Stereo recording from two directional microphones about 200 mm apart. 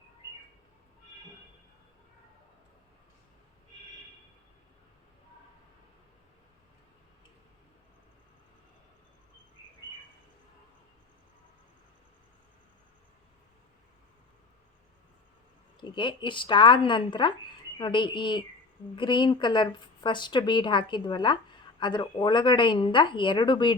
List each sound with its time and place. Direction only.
15.8 s a woman's voice: 25° left (ahead or behind)